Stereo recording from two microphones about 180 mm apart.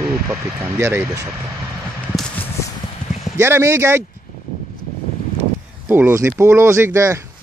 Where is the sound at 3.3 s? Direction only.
15° right (ahead or behind).